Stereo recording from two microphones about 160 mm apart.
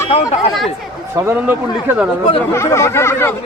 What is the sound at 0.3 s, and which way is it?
Speech, centre (ahead or behind).